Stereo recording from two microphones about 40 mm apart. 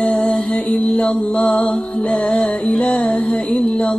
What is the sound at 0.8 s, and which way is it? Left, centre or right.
Music, centre.